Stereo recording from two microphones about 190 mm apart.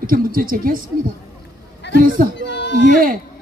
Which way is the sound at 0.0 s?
50° right (ahead or behind).